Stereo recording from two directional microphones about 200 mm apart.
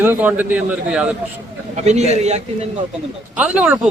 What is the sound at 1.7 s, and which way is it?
Speech, 35° right (ahead or behind).